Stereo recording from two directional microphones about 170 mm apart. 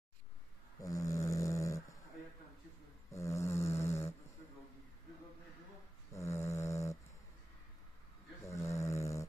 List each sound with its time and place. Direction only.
0.8 s snoring: 20° left (ahead or behind)
3.1 s a sound: 15° left (ahead or behind)
6.1 s snoring: 15° left (ahead or behind)
8.5 s snoring: 15° left (ahead or behind)